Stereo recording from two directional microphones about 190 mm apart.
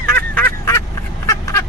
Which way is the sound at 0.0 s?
10° left (ahead or behind).